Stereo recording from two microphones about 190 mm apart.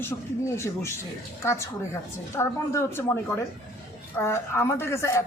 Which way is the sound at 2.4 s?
15° left (ahead or behind).